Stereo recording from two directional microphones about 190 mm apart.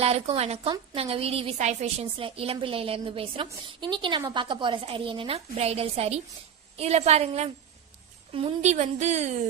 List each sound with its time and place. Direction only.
0.0 s a woman's voice: 30° right (ahead or behind)